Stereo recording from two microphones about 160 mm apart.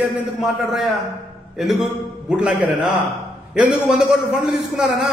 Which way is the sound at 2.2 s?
5° right (ahead or behind).